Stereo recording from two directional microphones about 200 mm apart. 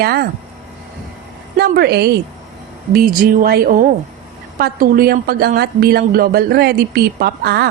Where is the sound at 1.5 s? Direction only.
50° right (ahead or behind).